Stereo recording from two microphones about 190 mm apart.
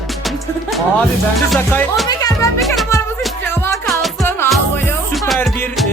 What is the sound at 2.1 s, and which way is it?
Music, 20° left (ahead or behind).